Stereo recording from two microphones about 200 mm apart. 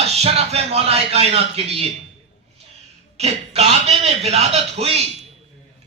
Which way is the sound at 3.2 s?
30° right (ahead or behind).